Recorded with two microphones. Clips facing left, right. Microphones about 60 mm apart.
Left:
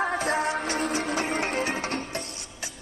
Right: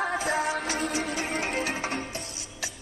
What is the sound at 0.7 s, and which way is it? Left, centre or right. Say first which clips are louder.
Music: left 2 dB; left.